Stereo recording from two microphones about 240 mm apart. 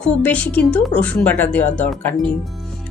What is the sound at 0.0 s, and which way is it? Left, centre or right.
Speech, centre.